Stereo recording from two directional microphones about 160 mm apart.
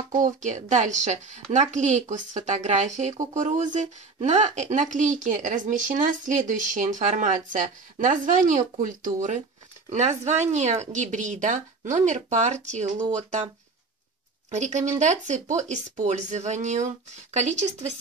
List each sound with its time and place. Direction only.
0.1 s speech: 50° right (ahead or behind)
14.5 s speech: 50° right (ahead or behind)